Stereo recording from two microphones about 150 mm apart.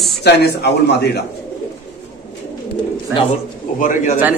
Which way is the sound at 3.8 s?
55° left (ahead or behind).